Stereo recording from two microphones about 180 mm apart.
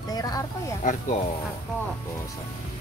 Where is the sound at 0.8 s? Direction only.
40° left (ahead or behind).